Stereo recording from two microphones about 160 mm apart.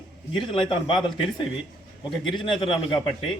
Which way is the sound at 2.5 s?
30° left (ahead or behind).